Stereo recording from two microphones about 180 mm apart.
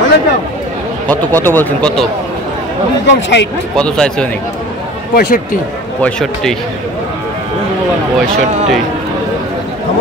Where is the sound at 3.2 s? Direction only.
80° left.